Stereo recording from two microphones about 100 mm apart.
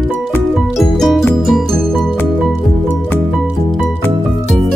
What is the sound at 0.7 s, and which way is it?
Music, centre (ahead or behind).